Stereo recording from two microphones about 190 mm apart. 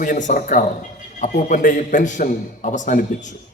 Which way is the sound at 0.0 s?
45° left (ahead or behind).